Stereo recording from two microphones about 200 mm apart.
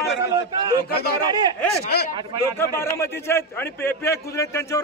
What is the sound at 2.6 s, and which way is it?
Speech, 15° left (ahead or behind).